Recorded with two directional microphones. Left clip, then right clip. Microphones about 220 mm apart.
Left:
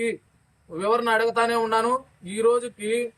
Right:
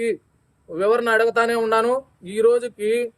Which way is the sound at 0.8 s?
20° right (ahead or behind).